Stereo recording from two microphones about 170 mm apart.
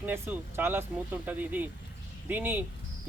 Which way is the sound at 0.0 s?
10° right (ahead or behind).